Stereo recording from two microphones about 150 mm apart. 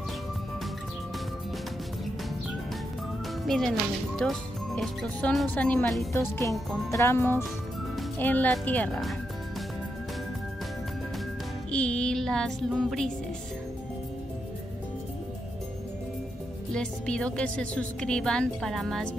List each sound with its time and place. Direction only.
3.4 s a woman's voice: centre (ahead or behind)
6.9 s speech: 20° left (ahead or behind)
11.7 s a woman's voice: 5° left (ahead or behind)
16.7 s a woman's voice: 5° left (ahead or behind)